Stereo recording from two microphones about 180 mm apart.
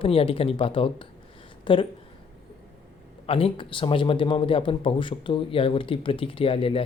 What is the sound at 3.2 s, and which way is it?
A man's voice, 30° left (ahead or behind).